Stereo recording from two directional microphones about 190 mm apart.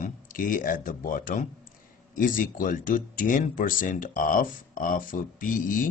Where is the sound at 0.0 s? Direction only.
45° left (ahead or behind).